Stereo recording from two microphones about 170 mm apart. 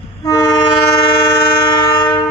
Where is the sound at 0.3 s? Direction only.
25° left (ahead or behind).